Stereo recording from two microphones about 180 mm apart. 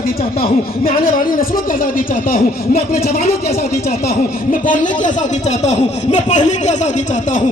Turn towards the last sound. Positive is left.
turn(degrees=45)  # may be behind; listen again after turning